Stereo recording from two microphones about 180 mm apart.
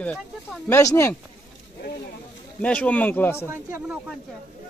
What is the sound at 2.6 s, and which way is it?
Speech, 10° left (ahead or behind).